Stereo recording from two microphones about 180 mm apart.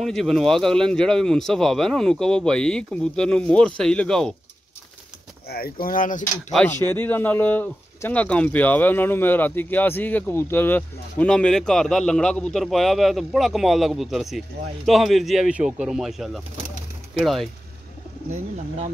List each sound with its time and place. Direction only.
0.0 s a man's voice: centre (ahead or behind)
5.5 s speech: 55° left (ahead or behind)
6.5 s a man's voice: 10° left (ahead or behind)